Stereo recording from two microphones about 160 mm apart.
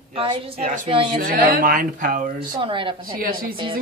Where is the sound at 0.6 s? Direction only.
55° right (ahead or behind).